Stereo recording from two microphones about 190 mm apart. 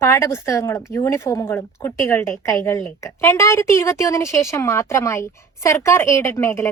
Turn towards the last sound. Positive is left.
turn(degrees=15)  # may be behind; listen again after turning